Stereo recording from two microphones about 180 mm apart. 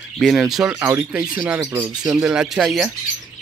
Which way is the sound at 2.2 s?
5° right (ahead or behind).